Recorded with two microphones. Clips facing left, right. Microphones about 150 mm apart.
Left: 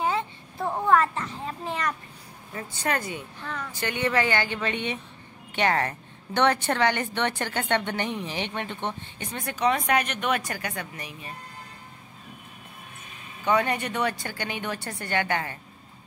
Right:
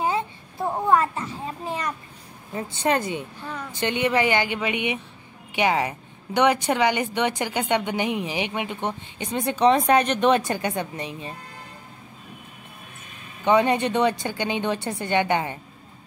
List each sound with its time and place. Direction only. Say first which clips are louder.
0.0 s a sound: right 2 dB; 15° right (ahead or behind)
2.5 s a woman's voice: right 6 dB; 25° right (ahead or behind)
13.4 s a woman's voice: right 5 dB; 20° right (ahead or behind)